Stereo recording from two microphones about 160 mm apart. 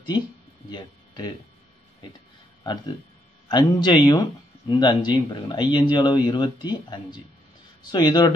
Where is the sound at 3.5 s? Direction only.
25° left (ahead or behind).